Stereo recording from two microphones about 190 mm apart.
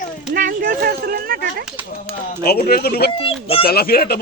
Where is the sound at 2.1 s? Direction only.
50° left (ahead or behind).